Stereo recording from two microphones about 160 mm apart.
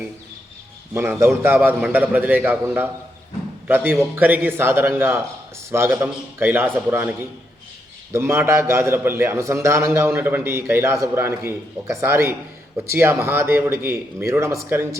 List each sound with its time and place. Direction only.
0.9 s a man's voice: 15° right (ahead or behind)